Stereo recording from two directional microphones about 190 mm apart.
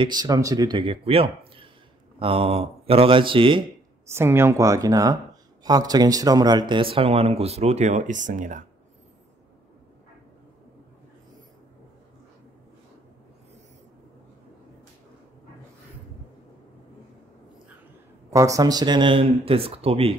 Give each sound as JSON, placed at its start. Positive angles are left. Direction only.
{"t": 0.0, "sound": "speech", "side_deg": -20}
{"t": 4.1, "sound": "speech", "side_deg": -15}
{"t": 18.3, "sound": "speech", "side_deg": -15}